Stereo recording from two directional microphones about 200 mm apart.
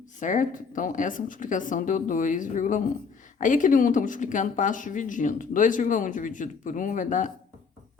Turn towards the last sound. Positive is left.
turn(degrees=40)  # may be behind; listen again after turning